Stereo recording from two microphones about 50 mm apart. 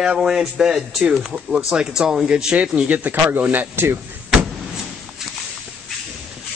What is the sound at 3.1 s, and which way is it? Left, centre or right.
Speech, right.